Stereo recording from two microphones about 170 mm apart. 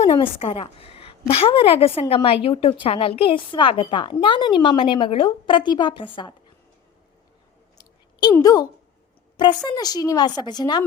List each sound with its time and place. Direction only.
0.2 s a woman's voice: 35° left (ahead or behind)
8.4 s a woman's voice: 20° left (ahead or behind)
9.6 s a woman's voice: 25° left (ahead or behind)